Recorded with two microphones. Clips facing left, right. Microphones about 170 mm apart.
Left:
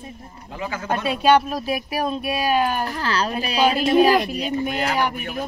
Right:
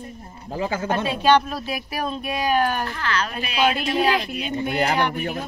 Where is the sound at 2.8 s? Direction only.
35° left (ahead or behind).